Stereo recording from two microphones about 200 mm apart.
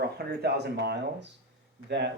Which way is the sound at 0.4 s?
55° right (ahead or behind).